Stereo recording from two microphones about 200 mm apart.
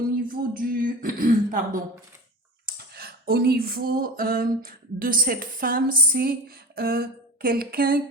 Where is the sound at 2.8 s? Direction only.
50° right (ahead or behind).